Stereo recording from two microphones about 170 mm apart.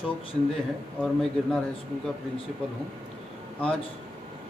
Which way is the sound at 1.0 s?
5° left (ahead or behind).